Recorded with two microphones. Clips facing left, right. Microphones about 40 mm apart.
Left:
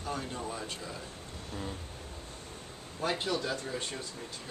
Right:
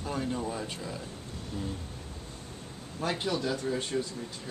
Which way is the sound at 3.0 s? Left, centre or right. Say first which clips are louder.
Right 1 dB; centre.